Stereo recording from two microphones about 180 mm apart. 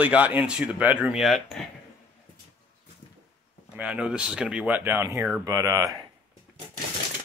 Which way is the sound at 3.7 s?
5° right (ahead or behind).